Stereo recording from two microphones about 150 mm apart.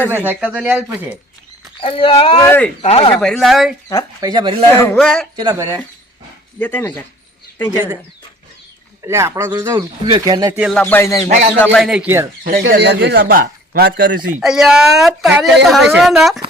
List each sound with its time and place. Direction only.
0.1 s speech: 15° right (ahead or behind)
1.8 s speech: 35° left (ahead or behind)
2.4 s a sound: 10° left (ahead or behind)
2.8 s speech: 40° left (ahead or behind)
3.2 s a woman's voice: 5° left (ahead or behind)
4.2 s speech: 30° right (ahead or behind)
4.7 s a woman's voice: 10° left (ahead or behind)
5.4 s speech: 25° right (ahead or behind)
6.6 s a sound: 10° left (ahead or behind)
9.0 s speech: 20° right (ahead or behind)
10.5 s a sound: centre (ahead or behind); by 11.3 s 20° left (ahead or behind)
11.6 s a woman's voice: 5° left (ahead or behind)
12.4 s speech: 75° right (ahead or behind)
14.3 s a woman's voice: 5° right (ahead or behind)